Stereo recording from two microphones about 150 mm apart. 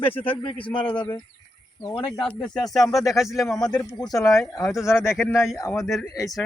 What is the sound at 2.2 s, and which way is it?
Speech, 5° left (ahead or behind).